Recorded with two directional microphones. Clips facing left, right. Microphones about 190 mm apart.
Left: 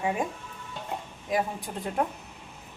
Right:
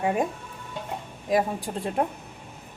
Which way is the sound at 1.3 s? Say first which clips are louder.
Right 5 dB; 35° right (ahead or behind).